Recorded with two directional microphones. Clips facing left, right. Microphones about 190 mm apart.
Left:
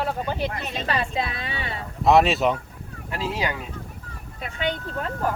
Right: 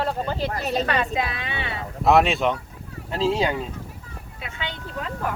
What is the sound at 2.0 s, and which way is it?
Speech, centre (ahead or behind).